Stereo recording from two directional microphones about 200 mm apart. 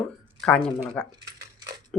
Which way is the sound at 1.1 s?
20° right (ahead or behind).